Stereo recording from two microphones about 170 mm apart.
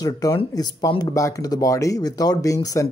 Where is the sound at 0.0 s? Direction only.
20° left (ahead or behind).